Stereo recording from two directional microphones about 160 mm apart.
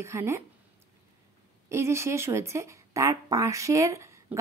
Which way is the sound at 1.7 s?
15° right (ahead or behind).